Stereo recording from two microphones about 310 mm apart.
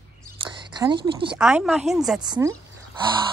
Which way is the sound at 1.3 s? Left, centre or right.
Centre.